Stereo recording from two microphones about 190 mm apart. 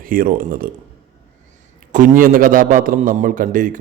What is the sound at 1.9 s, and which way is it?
A man's voice, 45° right (ahead or behind).